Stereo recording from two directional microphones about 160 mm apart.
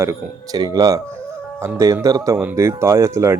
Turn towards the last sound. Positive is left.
turn(degrees=-20)  # may be behind; listen again after turning